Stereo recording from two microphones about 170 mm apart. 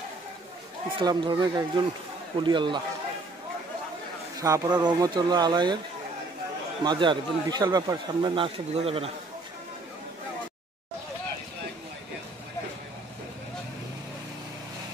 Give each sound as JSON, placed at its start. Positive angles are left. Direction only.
{"t": 0.9, "sound": "speech", "side_deg": -25}
{"t": 4.4, "sound": "speech", "side_deg": -25}
{"t": 6.8, "sound": "speech", "side_deg": -25}